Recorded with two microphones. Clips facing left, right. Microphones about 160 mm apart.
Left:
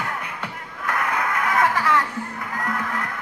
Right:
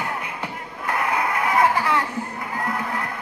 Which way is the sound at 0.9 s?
15° right (ahead or behind).